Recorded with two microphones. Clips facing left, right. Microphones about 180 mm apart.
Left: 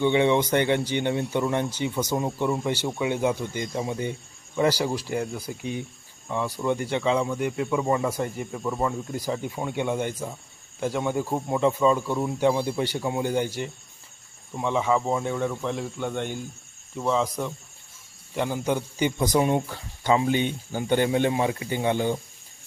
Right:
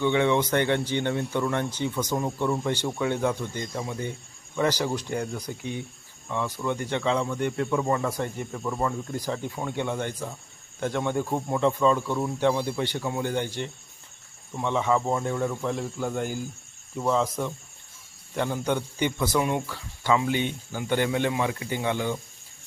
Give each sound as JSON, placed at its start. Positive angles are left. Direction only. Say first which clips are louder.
{"t": 0.0, "sound": "speech", "louder": "left 2 dB", "side_deg": 20}
{"t": 19.4, "sound": "speech", "louder": "left 5 dB", "side_deg": 30}